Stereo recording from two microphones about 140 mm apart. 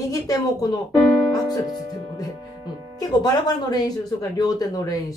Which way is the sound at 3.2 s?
30° left (ahead or behind).